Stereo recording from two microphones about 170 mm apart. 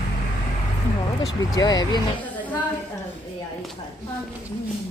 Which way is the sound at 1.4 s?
20° left (ahead or behind).